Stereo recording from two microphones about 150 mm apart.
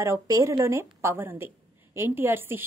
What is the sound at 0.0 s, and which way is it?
A woman's voice, 20° right (ahead or behind).